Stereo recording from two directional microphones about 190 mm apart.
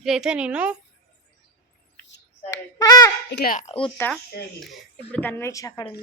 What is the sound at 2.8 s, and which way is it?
Speech, 20° left (ahead or behind).